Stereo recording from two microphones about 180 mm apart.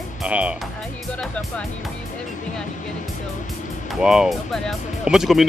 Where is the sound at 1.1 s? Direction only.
5° left (ahead or behind).